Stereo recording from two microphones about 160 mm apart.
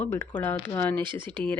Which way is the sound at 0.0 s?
15° left (ahead or behind).